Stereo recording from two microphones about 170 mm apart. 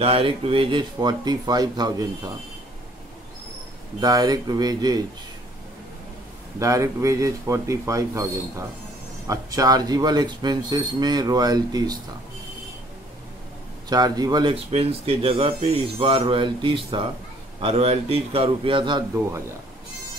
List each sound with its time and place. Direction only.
0.0 s speech: 35° right (ahead or behind)
4.0 s speech: 25° right (ahead or behind)
6.6 s speech: 20° right (ahead or behind)
13.8 s speech: 25° right (ahead or behind)